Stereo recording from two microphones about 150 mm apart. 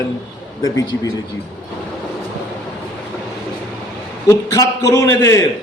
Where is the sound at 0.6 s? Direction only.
25° left (ahead or behind).